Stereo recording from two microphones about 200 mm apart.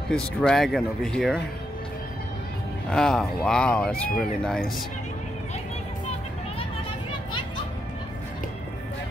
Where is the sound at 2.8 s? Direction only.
5° left (ahead or behind).